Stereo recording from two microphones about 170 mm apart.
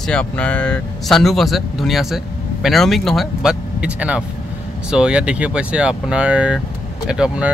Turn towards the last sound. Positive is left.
turn(degrees=-5)  # may be behind; listen again after turning